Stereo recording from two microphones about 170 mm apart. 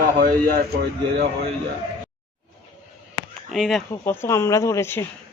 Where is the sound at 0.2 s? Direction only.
65° right (ahead or behind).